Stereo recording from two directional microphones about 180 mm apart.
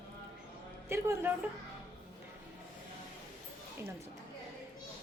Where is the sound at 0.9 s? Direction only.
15° right (ahead or behind).